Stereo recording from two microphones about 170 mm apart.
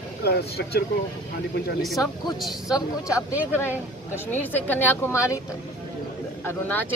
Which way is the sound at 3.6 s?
15° left (ahead or behind).